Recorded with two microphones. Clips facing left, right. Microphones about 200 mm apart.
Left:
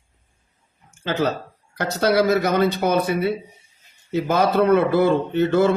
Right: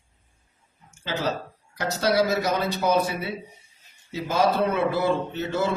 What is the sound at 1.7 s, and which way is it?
A man's voice, 60° left (ahead or behind).